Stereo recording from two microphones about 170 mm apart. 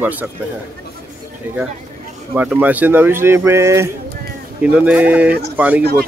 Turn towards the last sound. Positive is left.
turn(degrees=-10)  # may be behind; listen again after turning